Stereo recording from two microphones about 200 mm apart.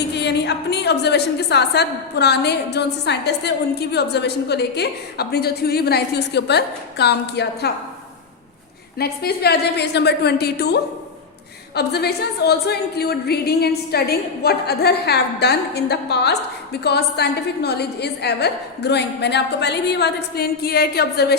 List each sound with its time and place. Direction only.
0.2 s a woman's voice: 55° left (ahead or behind)
9.0 s a woman's voice: 50° left (ahead or behind)